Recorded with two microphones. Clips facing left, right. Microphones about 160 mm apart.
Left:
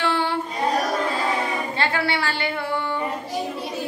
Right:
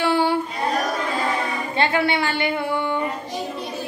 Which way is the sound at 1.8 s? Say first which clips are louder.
Right 5 dB; 20° right (ahead or behind).